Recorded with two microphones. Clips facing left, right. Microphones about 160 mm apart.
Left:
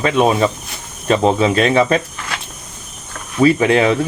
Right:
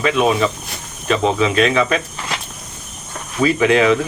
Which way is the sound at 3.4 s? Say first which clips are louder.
Left 2 dB; 35° left (ahead or behind).